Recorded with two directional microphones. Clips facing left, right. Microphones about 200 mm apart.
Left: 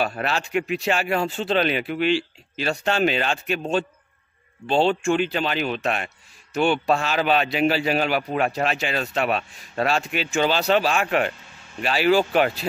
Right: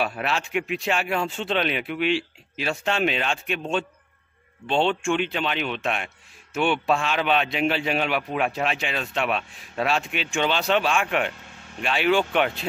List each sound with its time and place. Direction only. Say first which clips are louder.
0.0 s speech: left 2 dB; centre (ahead or behind)
5.0 s speech: left 3 dB; centre (ahead or behind)
5.8 s a sound: left 2 dB; centre (ahead or behind)
6.9 s speech: left 2 dB; centre (ahead or behind)
12.1 s speech: left 3 dB; 35° left (ahead or behind)
12.4 s speech: left 3 dB; centre (ahead or behind)